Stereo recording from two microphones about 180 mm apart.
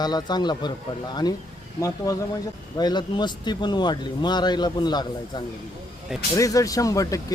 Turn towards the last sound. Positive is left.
turn(degrees=20)  # may be behind; listen again after turning